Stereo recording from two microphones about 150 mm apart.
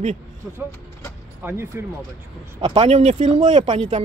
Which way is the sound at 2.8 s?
45° right (ahead or behind).